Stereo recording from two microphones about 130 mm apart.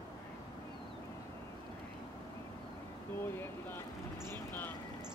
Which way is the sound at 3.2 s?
15° left (ahead or behind).